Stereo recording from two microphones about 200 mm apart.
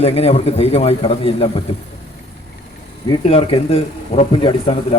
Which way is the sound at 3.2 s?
30° left (ahead or behind).